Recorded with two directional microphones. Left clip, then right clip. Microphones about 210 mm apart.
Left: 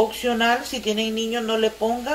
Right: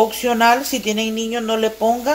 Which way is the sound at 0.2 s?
55° right (ahead or behind).